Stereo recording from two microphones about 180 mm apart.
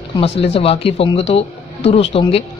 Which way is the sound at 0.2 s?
30° left (ahead or behind).